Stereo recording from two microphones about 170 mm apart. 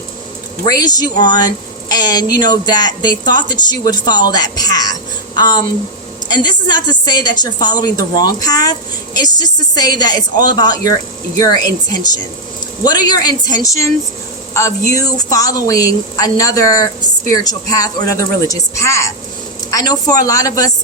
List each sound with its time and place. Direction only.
0.7 s speech: 25° left (ahead or behind)